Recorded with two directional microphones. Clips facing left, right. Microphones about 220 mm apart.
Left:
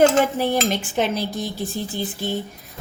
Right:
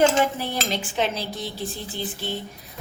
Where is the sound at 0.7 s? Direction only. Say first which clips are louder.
Left 3 dB; 50° left (ahead or behind).